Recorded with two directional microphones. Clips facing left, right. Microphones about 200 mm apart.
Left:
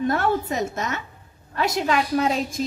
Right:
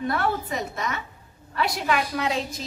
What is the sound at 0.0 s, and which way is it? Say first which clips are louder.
A woman's voice: left 4 dB; 45° left (ahead or behind).